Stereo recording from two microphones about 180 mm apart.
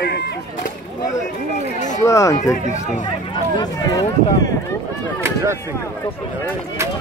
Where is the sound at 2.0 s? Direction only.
20° left (ahead or behind).